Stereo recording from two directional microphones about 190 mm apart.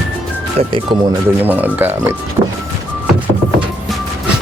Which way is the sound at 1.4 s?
10° right (ahead or behind).